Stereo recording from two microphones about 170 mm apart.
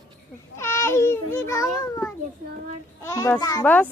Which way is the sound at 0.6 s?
15° left (ahead or behind).